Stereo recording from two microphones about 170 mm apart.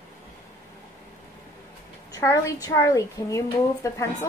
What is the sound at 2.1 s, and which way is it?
A woman's voice, 20° left (ahead or behind).